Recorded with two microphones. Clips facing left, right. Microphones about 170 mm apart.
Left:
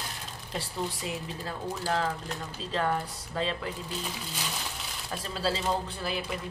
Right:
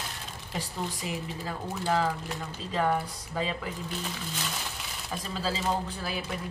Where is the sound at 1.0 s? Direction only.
5° right (ahead or behind).